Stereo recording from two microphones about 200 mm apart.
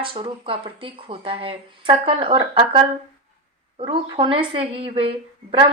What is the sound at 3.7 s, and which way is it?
Speech, 25° right (ahead or behind).